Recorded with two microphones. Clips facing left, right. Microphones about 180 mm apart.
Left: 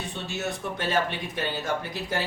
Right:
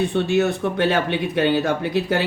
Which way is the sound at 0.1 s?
60° right (ahead or behind).